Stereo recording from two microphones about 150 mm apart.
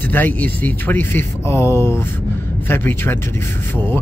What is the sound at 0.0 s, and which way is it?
Speech, 15° left (ahead or behind).